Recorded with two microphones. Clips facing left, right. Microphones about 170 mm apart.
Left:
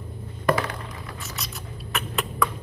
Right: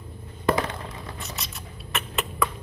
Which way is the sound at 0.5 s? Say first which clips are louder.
Even; 25° right (ahead or behind).